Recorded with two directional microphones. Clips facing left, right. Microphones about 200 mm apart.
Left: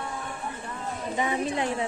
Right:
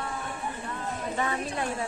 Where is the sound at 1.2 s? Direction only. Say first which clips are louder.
Left 5 dB; 15° left (ahead or behind).